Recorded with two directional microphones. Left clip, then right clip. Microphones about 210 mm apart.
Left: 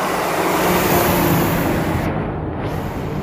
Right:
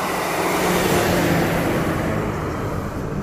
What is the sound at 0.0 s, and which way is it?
Vehicle, 10° left (ahead or behind).